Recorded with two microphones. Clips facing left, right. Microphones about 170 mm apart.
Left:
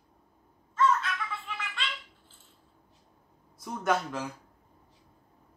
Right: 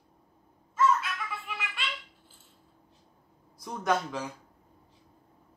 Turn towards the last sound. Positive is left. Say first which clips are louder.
# even
turn(degrees=0)  # may be behind; listen again after turning